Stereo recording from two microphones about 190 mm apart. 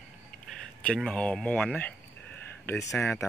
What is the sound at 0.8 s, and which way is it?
Speech, 5° left (ahead or behind).